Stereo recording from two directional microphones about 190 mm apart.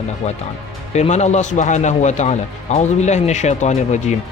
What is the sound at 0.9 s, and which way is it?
Speech, 35° left (ahead or behind).